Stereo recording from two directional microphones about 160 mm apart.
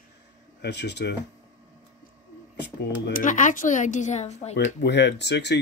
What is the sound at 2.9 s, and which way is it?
Speech, 90° left.